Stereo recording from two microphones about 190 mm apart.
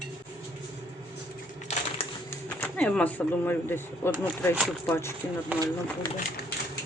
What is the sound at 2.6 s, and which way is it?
Speech, 5° left (ahead or behind).